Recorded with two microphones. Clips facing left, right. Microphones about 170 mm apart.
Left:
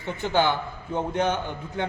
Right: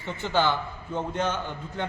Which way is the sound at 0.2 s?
15° left (ahead or behind).